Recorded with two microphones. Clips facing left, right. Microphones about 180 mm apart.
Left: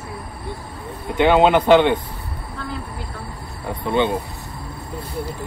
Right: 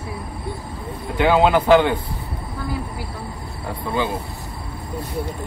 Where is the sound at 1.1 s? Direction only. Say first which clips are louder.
Left 2 dB; 20° left (ahead or behind).